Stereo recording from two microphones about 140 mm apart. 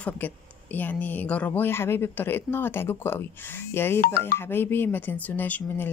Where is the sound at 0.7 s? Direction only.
10° left (ahead or behind).